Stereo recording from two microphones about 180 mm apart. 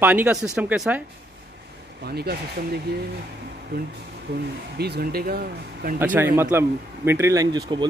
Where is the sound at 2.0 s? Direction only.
60° right (ahead or behind).